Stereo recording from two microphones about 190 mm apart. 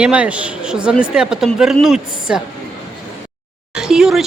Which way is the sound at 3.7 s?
5° right (ahead or behind).